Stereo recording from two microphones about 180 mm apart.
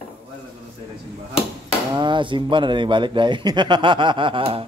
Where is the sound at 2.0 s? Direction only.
25° right (ahead or behind).